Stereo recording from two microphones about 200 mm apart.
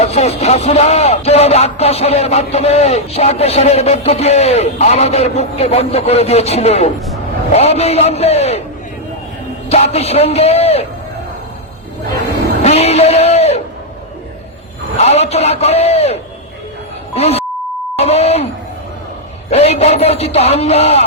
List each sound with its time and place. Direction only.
0.0 s speech: 30° left (ahead or behind)
9.6 s speech: 35° left (ahead or behind)
12.6 s music: 30° left (ahead or behind)
14.9 s speech: 30° left (ahead or behind)
17.2 s speech: 30° left (ahead or behind)
17.9 s beep: 30° left (ahead or behind)
19.5 s speech: 30° left (ahead or behind)